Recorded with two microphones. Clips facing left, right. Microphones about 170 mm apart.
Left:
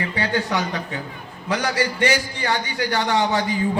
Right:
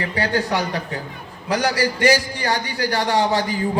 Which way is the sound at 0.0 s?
40° right (ahead or behind).